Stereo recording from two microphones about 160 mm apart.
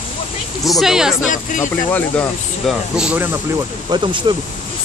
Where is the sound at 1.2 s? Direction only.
55° left (ahead or behind).